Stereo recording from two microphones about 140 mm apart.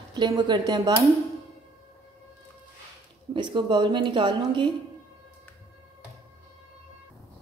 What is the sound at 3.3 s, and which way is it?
A woman's voice, 35° right (ahead or behind).